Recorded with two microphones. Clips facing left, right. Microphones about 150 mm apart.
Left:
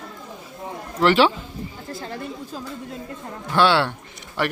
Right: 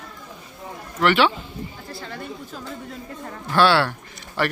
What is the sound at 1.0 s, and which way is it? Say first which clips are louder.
Speech: left 2 dB; 35° left (ahead or behind).